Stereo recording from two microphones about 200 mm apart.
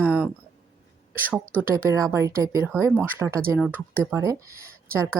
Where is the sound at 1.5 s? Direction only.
10° right (ahead or behind).